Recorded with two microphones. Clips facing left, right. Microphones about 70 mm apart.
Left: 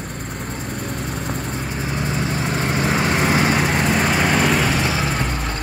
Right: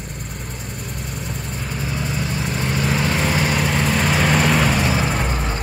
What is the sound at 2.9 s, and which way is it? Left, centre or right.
Vehicle, left.